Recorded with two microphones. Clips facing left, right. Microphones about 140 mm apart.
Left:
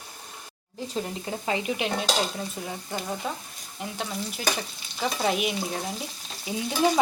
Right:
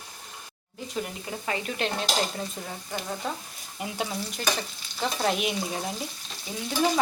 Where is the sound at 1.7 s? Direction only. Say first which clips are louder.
Right 1 dB; 5° left (ahead or behind).